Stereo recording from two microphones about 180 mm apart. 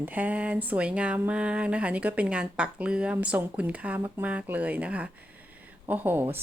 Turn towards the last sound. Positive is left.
turn(degrees=-10)  # may be behind; listen again after turning